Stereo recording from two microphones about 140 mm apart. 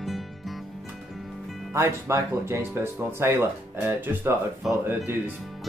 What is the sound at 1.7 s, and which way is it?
Speech, 20° right (ahead or behind).